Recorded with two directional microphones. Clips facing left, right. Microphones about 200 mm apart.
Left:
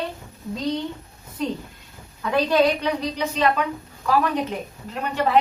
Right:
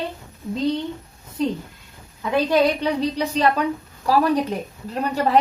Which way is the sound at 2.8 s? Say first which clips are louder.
Right 3 dB; 30° right (ahead or behind).